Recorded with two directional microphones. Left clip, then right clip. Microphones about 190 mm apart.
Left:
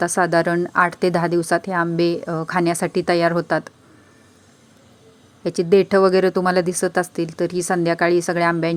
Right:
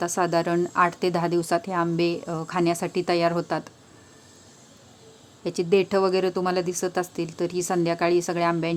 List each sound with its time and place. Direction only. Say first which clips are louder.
0.0 s a woman's voice: left 6 dB; 20° left (ahead or behind)
5.4 s a woman's voice: left 6 dB; 20° left (ahead or behind)